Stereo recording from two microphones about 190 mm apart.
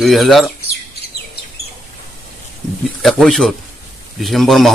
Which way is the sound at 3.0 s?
5° left (ahead or behind).